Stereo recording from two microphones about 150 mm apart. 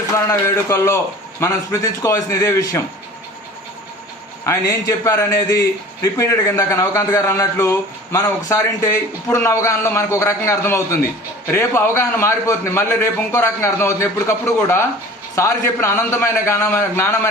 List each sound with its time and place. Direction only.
0.3 s a man's voice: 15° left (ahead or behind)
4.4 s a man's voice: 20° left (ahead or behind)